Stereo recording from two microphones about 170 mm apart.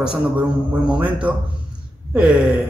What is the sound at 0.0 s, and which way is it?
A man's voice, 5° right (ahead or behind).